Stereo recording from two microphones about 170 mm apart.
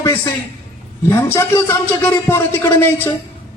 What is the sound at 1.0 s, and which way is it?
Speech, 15° left (ahead or behind).